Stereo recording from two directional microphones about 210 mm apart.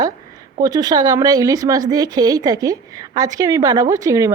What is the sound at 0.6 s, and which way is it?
Speech, 20° right (ahead or behind).